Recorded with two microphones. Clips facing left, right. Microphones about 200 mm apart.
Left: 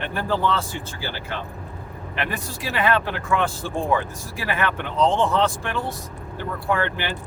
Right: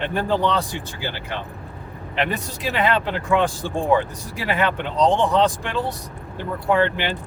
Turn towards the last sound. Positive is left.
turn(degrees=-20)  # may be behind; listen again after turning